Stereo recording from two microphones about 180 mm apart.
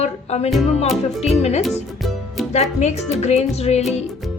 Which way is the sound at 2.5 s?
40° left (ahead or behind).